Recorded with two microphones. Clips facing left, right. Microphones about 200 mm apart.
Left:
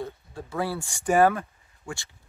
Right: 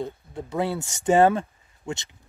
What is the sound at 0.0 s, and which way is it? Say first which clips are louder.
Speech: right 3 dB; 20° right (ahead or behind).